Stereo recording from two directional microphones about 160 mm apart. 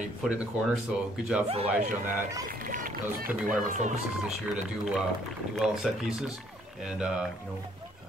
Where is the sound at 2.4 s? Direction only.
60° right (ahead or behind).